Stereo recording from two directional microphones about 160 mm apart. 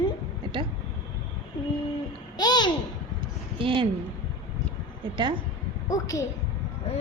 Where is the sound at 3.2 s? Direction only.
30° right (ahead or behind).